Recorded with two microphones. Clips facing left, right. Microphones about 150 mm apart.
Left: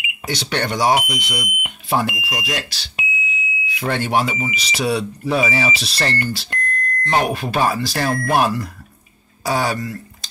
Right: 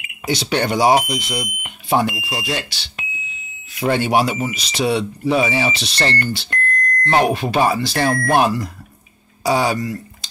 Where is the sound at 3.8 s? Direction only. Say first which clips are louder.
Right 3 dB; 10° right (ahead or behind).